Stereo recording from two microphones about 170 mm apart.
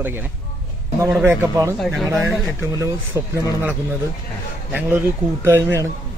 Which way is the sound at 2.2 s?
15° right (ahead or behind).